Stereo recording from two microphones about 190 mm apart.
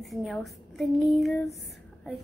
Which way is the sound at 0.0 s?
Centre (ahead or behind).